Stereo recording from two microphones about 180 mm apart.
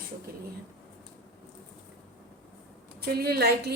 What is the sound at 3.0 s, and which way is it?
Speech, 60° right (ahead or behind).